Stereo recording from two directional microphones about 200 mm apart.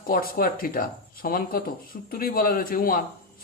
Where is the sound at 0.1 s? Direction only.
45° left (ahead or behind).